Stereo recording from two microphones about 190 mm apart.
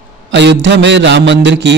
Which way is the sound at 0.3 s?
65° right (ahead or behind).